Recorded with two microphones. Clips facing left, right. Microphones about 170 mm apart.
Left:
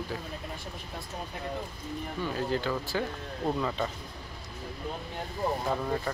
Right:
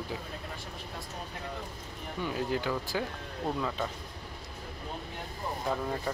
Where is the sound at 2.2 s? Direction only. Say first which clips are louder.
Left 1 dB; 15° right (ahead or behind).